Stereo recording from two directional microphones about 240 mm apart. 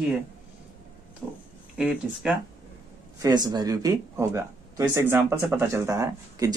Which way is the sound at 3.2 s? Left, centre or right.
Centre.